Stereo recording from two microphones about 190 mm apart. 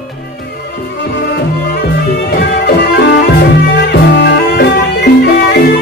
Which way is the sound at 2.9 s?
65° left (ahead or behind).